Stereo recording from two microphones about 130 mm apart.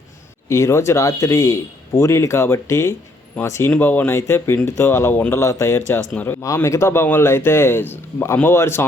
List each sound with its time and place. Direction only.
0.4 s speech: 20° left (ahead or behind)